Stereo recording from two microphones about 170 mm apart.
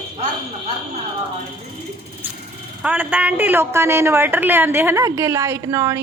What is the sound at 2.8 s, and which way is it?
A woman's voice, 10° right (ahead or behind).